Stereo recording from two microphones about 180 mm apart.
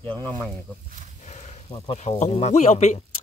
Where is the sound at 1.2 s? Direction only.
40° left (ahead or behind).